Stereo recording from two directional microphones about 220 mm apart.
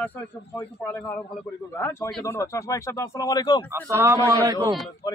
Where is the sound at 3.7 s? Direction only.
10° right (ahead or behind).